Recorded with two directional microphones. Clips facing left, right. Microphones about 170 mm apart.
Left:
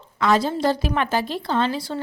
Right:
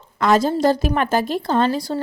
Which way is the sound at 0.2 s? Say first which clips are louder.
Right 3 dB; 45° right (ahead or behind).